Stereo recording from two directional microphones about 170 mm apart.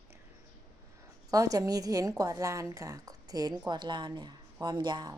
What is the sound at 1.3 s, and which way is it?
A woman's voice, 20° right (ahead or behind).